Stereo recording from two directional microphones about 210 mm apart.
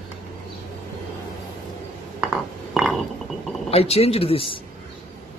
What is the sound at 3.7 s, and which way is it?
Speech, 30° left (ahead or behind).